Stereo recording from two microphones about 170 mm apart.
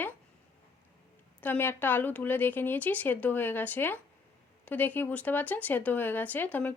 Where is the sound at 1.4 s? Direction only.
10° left (ahead or behind).